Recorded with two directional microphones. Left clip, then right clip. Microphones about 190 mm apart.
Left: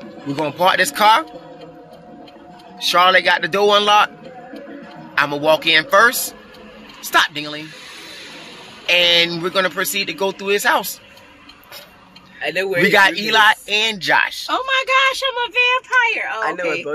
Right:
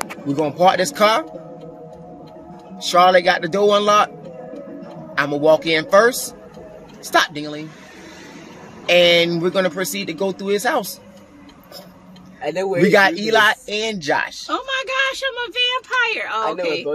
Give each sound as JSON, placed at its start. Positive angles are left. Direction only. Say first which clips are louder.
{"t": 0.4, "sound": "speech", "louder": "even", "side_deg": -30}
{"t": 2.8, "sound": "speech", "louder": "even", "side_deg": -30}
{"t": 5.1, "sound": "speech", "louder": "even", "side_deg": -30}
{"t": 8.8, "sound": "speech", "louder": "right 1 dB", "side_deg": -30}
{"t": 12.4, "sound": "a man's voice", "louder": "left 2 dB", "side_deg": -10}
{"t": 12.8, "sound": "speech", "louder": "left 1 dB", "side_deg": -30}
{"t": 14.4, "sound": "speech", "louder": "left 4 dB", "side_deg": 30}
{"t": 16.0, "sound": "speech", "louder": "left 2 dB", "side_deg": 5}